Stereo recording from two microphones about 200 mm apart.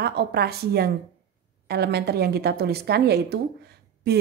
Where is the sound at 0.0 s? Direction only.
55° right (ahead or behind).